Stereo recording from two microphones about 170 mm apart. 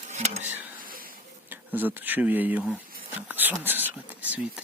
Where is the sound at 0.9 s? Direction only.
55° right (ahead or behind).